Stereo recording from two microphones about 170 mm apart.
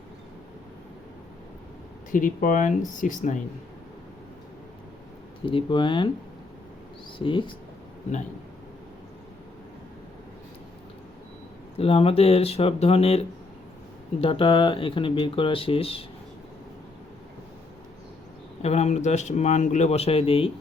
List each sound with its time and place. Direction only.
2.1 s speech: 55° left (ahead or behind)
5.5 s speech: 30° left (ahead or behind)
7.2 s speech: 30° left (ahead or behind)
11.8 s speech: 35° left (ahead or behind)
18.6 s speech: 40° left (ahead or behind)